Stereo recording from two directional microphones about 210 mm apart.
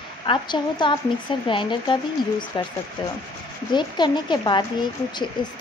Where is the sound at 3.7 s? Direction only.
20° left (ahead or behind).